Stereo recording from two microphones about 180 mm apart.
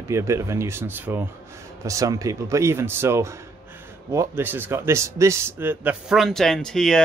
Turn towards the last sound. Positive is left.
turn(degrees=5)  # may be behind; listen again after turning